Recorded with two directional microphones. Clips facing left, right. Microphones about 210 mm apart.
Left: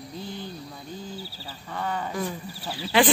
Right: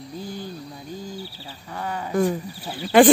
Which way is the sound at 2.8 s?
55° right (ahead or behind).